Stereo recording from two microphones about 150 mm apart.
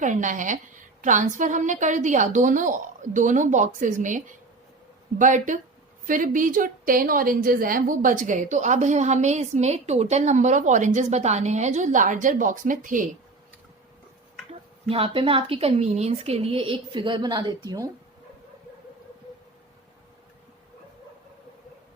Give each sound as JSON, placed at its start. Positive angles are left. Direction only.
{"t": 0.0, "sound": "a woman's voice", "side_deg": -55}
{"t": 14.8, "sound": "a woman's voice", "side_deg": -35}